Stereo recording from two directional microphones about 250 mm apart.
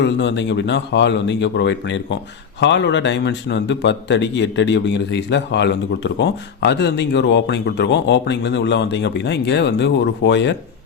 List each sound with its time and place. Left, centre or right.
0.0 s a man's voice: left